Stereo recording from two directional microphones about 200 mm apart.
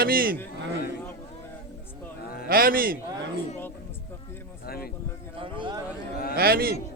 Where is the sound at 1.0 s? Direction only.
10° left (ahead or behind).